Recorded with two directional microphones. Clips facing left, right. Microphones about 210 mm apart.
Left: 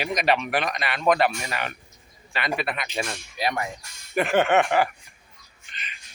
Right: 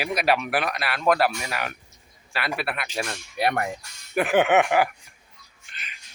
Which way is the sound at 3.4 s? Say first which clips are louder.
Right 3 dB; 60° right (ahead or behind).